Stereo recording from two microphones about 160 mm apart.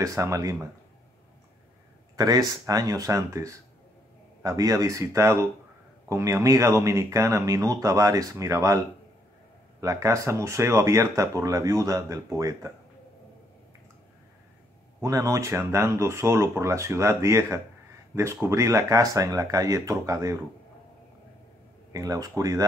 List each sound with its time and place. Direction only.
0.0 s speech: 20° right (ahead or behind)
2.1 s speech: 25° right (ahead or behind)
15.0 s speech: 20° right (ahead or behind)
21.9 s speech: 20° right (ahead or behind)